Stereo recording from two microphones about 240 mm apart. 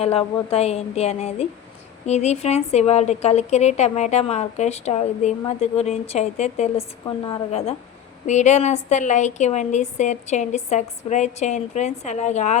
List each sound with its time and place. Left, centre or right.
0.0 s speech: left